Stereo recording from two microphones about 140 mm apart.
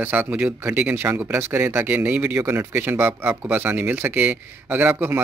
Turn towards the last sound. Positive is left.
turn(degrees=-15)  # may be behind; listen again after turning